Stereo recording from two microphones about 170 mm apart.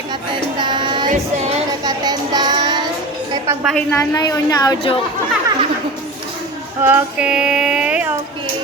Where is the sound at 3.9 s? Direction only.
20° left (ahead or behind).